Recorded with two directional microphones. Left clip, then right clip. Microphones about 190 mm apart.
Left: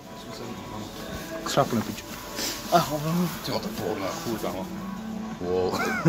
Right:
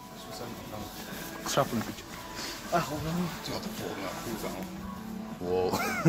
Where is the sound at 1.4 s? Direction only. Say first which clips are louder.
Left 4 dB; 10° right (ahead or behind).